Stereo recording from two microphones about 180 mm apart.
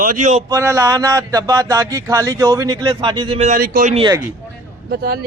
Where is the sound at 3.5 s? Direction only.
45° right (ahead or behind).